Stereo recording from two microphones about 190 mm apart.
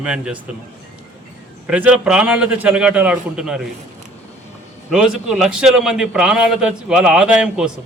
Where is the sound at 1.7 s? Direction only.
5° right (ahead or behind).